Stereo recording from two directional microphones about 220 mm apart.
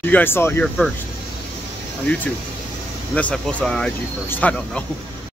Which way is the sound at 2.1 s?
5° left (ahead or behind).